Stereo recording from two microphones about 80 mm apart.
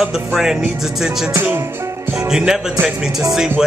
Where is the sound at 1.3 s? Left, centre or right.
Right.